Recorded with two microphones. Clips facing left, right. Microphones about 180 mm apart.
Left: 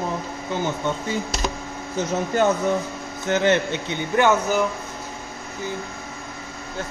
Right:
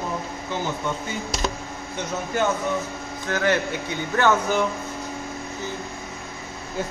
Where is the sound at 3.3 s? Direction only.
25° left (ahead or behind).